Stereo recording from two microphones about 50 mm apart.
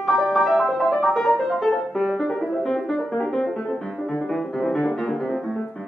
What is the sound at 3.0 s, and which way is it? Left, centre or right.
Music, left.